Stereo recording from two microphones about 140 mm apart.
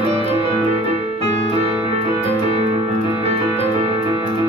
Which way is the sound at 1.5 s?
50° right (ahead or behind).